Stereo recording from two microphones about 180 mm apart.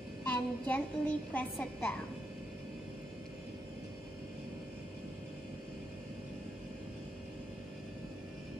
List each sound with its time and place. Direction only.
0.3 s a woman's voice: 10° left (ahead or behind)